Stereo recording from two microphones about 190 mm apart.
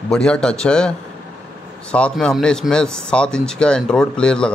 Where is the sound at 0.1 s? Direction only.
5° left (ahead or behind).